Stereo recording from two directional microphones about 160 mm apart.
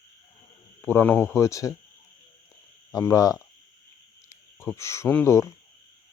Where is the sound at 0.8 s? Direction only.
10° left (ahead or behind).